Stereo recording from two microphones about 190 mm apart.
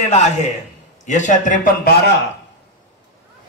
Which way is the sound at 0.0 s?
35° left (ahead or behind).